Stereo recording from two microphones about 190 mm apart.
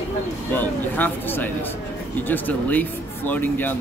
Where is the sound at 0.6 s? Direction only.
10° left (ahead or behind).